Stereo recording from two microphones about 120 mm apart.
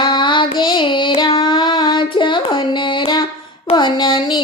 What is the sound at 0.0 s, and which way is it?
Child singing, 40° left (ahead or behind).